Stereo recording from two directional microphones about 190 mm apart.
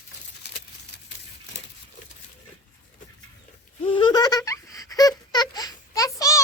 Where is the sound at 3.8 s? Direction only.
25° left (ahead or behind).